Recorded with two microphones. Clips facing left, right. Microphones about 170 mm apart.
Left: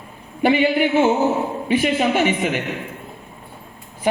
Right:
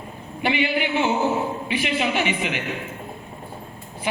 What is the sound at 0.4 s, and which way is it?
A man's voice, 45° left (ahead or behind).